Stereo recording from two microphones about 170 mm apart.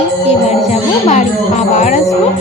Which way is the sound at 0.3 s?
40° left (ahead or behind).